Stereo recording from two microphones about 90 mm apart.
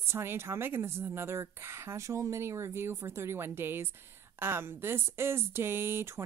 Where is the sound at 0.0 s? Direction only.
25° right (ahead or behind).